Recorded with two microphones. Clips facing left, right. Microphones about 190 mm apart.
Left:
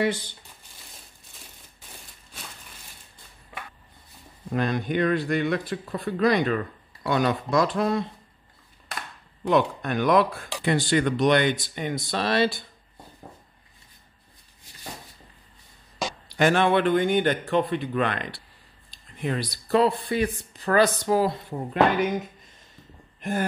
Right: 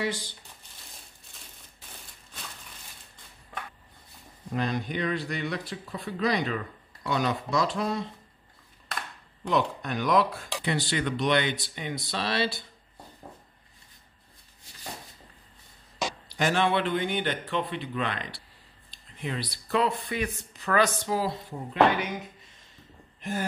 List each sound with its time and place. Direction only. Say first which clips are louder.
4.6 s speech: left 5 dB; 55° left (ahead or behind)
9.5 s speech: left 5 dB; 55° left (ahead or behind)
16.3 s speech: left 5 dB; 60° left (ahead or behind); by 21.1 s 35° left (ahead or behind)
21.1 s speech: left 6 dB; 55° left (ahead or behind)
23.2 s speech: left 4 dB; 50° left (ahead or behind)